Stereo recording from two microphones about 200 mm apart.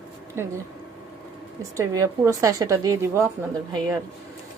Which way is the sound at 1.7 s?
15° right (ahead or behind).